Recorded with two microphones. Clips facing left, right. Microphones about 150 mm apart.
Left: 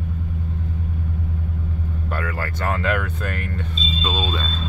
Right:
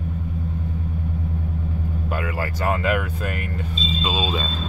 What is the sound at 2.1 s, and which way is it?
Speech, 15° right (ahead or behind).